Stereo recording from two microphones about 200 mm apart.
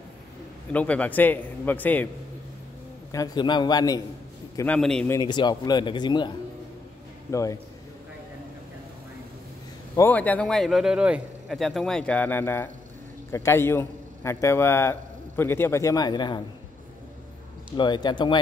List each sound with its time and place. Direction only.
0.7 s a man's voice: 5° left (ahead or behind)
3.1 s speech: 20° left (ahead or behind)
4.6 s speech: 5° left (ahead or behind)
5.1 s a man's voice: 20° left (ahead or behind)
9.9 s a man's voice: 10° left (ahead or behind)
17.7 s speech: 20° left (ahead or behind)